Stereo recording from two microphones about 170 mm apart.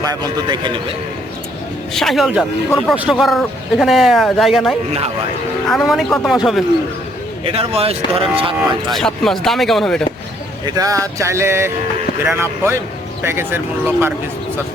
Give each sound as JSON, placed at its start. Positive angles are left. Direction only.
{"t": 0.0, "sound": "a man's voice", "side_deg": -25}
{"t": 1.9, "sound": "speech", "side_deg": 0}
{"t": 5.7, "sound": "speech", "side_deg": 0}
{"t": 7.4, "sound": "speech", "side_deg": -35}
{"t": 8.9, "sound": "speech", "side_deg": 0}
{"t": 10.7, "sound": "music", "side_deg": -20}